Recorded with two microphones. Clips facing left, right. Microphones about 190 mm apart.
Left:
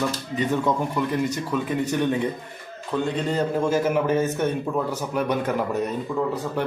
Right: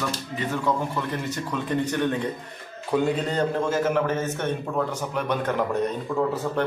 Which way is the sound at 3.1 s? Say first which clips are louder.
Left 1 dB; centre (ahead or behind).